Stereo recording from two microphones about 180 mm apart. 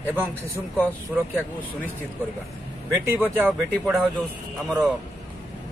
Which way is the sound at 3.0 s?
10° right (ahead or behind).